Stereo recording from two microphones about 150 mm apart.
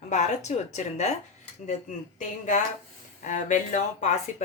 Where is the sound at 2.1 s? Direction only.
55° left (ahead or behind).